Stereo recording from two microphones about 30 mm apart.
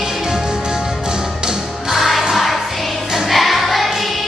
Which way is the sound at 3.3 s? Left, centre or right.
Centre.